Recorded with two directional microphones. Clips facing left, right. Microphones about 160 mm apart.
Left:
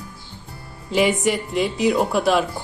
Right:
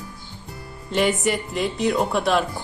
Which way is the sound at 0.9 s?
Centre (ahead or behind).